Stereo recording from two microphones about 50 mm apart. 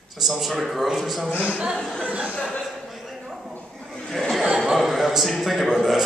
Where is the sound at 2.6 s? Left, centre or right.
Centre.